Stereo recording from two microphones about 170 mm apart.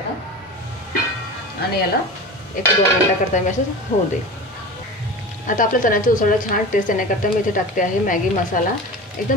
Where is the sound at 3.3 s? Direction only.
45° left (ahead or behind).